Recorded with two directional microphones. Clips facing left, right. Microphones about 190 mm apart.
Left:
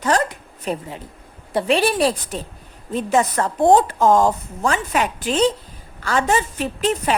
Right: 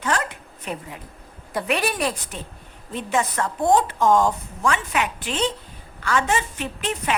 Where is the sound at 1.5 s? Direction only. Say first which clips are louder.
Left 6 dB; 30° left (ahead or behind).